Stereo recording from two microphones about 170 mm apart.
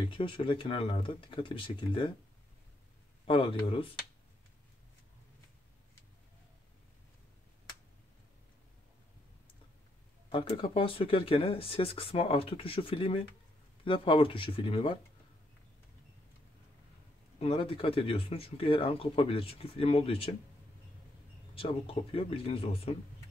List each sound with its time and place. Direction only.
0.0 s speech: 30° left (ahead or behind)
3.3 s speech: 30° left (ahead or behind)
10.3 s speech: 35° left (ahead or behind)
17.4 s speech: 30° left (ahead or behind)
21.5 s speech: 35° left (ahead or behind)